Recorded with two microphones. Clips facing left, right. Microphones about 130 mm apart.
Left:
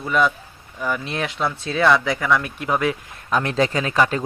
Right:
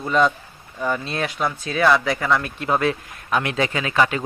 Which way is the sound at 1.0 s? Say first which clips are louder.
Even; 20° left (ahead or behind).